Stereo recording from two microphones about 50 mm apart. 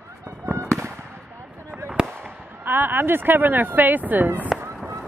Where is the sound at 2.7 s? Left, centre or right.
Right.